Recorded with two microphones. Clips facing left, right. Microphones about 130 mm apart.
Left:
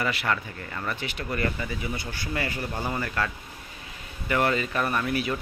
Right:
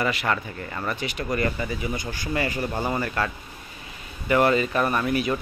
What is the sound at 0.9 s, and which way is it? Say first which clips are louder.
Speech: right 4 dB; 15° right (ahead or behind).